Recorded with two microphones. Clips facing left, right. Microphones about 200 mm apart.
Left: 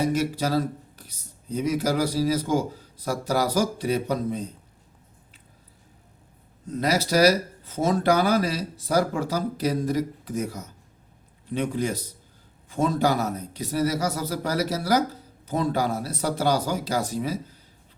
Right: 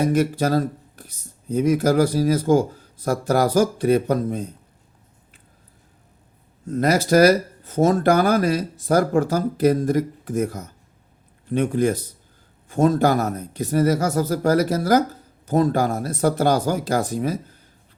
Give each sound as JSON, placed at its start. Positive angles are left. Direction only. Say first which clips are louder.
{"t": 0.0, "sound": "speech", "louder": "right 5 dB", "side_deg": -55}
{"t": 6.7, "sound": "speech", "louder": "right 6 dB", "side_deg": -50}